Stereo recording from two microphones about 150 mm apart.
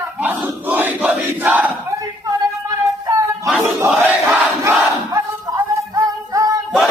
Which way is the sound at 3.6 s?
15° right (ahead or behind).